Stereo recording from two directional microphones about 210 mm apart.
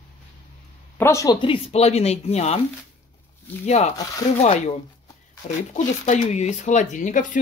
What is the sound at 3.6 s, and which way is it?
Speech, 30° left (ahead or behind).